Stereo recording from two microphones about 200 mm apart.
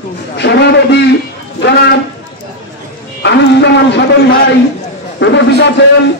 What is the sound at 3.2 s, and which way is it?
Speech, 60° left (ahead or behind).